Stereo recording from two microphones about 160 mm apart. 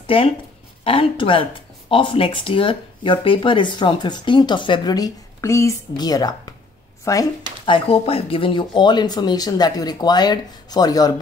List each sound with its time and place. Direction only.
0.0 s speech: 35° left (ahead or behind)
7.6 s speech: 35° left (ahead or behind)